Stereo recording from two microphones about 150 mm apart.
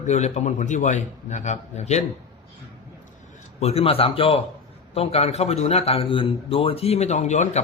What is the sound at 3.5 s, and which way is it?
A man's voice, 45° left (ahead or behind).